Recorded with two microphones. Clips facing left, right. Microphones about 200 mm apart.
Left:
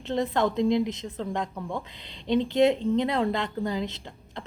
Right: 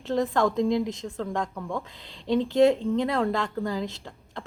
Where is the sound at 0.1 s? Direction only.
25° left (ahead or behind).